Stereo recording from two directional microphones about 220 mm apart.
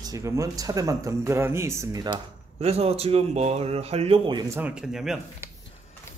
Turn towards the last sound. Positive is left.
turn(degrees=0)  # may be behind; listen again after turning